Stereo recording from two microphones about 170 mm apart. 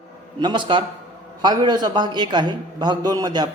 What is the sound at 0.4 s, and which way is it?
A man's voice, 30° right (ahead or behind).